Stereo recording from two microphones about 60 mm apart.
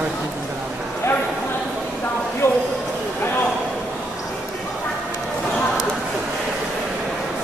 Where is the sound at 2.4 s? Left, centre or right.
Left.